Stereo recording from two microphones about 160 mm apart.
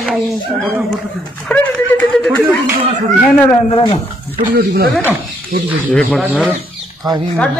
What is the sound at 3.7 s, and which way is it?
Speech, 25° left (ahead or behind).